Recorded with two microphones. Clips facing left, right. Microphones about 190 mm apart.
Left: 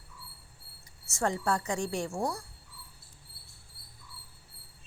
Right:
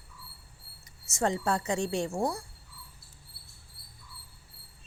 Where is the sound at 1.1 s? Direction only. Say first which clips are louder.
Right 1 dB; 20° right (ahead or behind).